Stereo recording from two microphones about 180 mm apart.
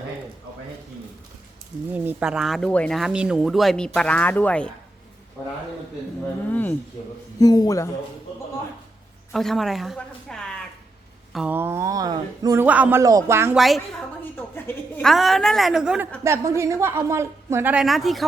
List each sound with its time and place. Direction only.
1.9 s a woman's voice: 10° right (ahead or behind); by 6.7 s 10° left (ahead or behind)
7.3 s a man's voice: 20° left (ahead or behind)
9.3 s a woman's voice: centre (ahead or behind); by 12.6 s 20° right (ahead or behind)
12.6 s a woman's voice: 10° right (ahead or behind)
13.6 s speech: centre (ahead or behind)
14.3 s a woman's voice: 10° left (ahead or behind)
15.1 s speech: centre (ahead or behind)
16.2 s a woman's voice: 15° right (ahead or behind); by 18.3 s centre (ahead or behind)